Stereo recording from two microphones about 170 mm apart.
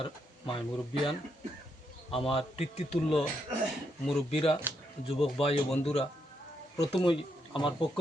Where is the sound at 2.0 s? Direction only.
30° left (ahead or behind).